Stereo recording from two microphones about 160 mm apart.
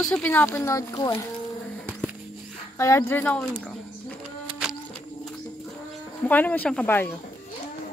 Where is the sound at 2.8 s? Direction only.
15° left (ahead or behind).